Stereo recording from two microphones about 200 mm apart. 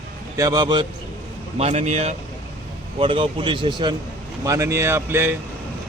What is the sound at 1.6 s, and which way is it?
Speech, 35° right (ahead or behind).